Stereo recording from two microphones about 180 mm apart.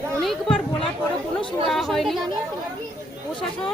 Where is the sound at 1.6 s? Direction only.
Centre (ahead or behind).